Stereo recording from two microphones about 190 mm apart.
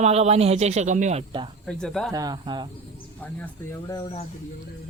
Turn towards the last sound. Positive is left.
turn(degrees=15)  # may be behind; listen again after turning